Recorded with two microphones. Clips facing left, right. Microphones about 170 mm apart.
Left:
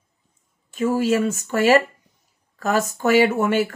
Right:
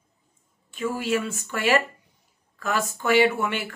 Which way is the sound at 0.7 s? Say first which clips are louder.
Left 7 dB; 45° left (ahead or behind).